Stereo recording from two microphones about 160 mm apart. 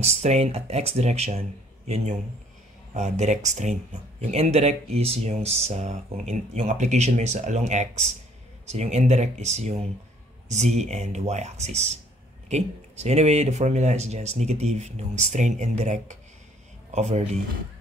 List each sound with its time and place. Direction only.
0.0 s speech: 45° right (ahead or behind)